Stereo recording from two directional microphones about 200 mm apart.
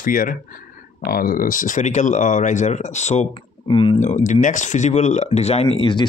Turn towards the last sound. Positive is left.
turn(degrees=25)  # may be behind; listen again after turning